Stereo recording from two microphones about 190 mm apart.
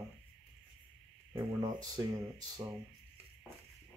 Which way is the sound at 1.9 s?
20° right (ahead or behind).